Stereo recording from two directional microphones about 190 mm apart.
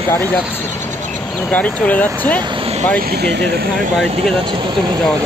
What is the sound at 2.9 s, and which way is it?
Speech, 55° right (ahead or behind).